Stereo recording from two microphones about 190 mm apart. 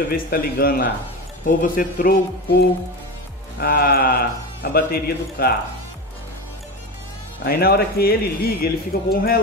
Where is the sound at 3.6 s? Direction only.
50° left (ahead or behind).